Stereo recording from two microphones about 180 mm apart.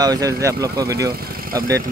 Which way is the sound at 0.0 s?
20° right (ahead or behind).